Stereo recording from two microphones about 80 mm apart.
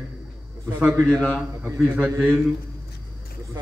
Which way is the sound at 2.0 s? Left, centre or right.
Right.